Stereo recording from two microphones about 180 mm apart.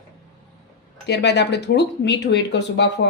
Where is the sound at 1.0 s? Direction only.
70° left (ahead or behind).